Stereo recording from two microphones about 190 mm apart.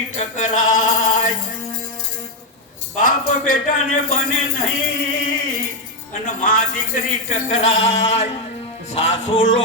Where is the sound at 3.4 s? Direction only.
45° left (ahead or behind).